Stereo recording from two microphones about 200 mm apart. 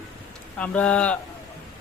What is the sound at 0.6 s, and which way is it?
Speech, 5° left (ahead or behind).